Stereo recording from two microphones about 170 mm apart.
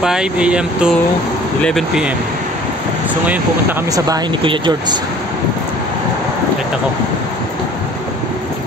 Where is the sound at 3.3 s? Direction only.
10° right (ahead or behind).